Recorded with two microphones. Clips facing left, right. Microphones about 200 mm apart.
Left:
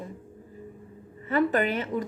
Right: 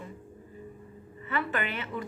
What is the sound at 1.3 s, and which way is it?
Speech, 40° left (ahead or behind).